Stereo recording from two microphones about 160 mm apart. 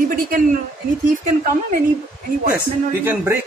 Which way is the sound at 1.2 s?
55° right (ahead or behind).